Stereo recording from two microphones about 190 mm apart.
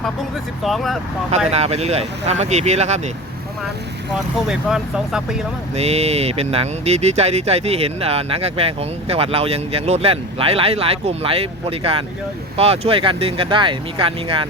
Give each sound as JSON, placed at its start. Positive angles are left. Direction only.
{"t": 0.6, "sound": "speech", "side_deg": 0}
{"t": 1.5, "sound": "speech", "side_deg": -35}
{"t": 4.4, "sound": "speech", "side_deg": -5}
{"t": 5.7, "sound": "speech", "side_deg": -35}